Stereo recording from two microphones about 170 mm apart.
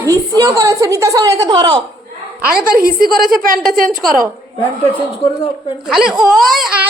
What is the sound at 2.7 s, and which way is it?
A woman's voice, 60° right (ahead or behind).